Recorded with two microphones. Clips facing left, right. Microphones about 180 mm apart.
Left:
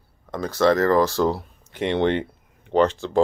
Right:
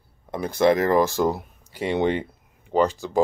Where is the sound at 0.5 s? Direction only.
15° right (ahead or behind).